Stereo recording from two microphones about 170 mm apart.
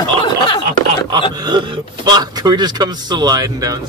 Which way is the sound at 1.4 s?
25° right (ahead or behind).